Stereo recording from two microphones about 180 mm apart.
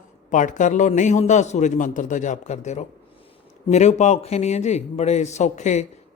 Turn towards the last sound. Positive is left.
turn(degrees=40)  # may be behind; listen again after turning